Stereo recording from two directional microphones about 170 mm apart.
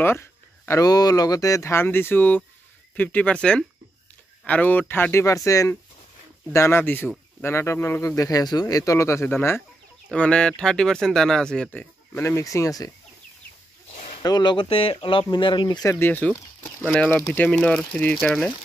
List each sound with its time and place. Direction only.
0.0 s speech: 15° left (ahead or behind)
14.1 s speech: 25° left (ahead or behind)
15.9 s speech: 10° left (ahead or behind)